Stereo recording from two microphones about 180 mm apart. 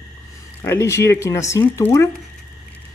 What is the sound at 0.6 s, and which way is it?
Speech, 15° left (ahead or behind).